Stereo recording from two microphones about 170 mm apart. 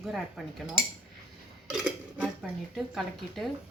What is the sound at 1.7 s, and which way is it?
Speech, 5° right (ahead or behind).